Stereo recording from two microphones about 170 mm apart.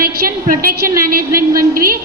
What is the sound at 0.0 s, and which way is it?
A woman's voice, 60° right (ahead or behind).